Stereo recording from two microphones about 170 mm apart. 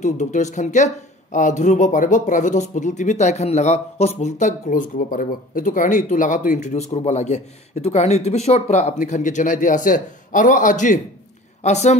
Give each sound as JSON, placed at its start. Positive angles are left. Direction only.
{"t": 0.0, "sound": "speech", "side_deg": 45}